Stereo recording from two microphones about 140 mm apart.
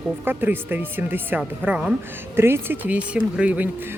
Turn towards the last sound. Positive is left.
turn(degrees=-10)  # may be behind; listen again after turning